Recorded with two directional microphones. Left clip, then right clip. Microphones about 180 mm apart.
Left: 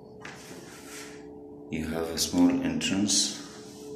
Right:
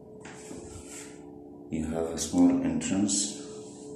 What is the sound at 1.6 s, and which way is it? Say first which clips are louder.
Speech: even; 10° right (ahead or behind).